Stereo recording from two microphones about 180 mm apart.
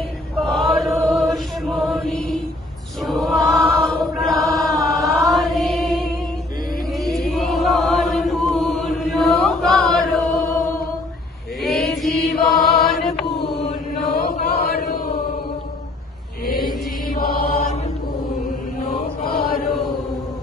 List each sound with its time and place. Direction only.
0.4 s chant: centre (ahead or behind)
11.6 s mantra: centre (ahead or behind)
12.8 s chant: centre (ahead or behind)
14.0 s chant: 50° left (ahead or behind)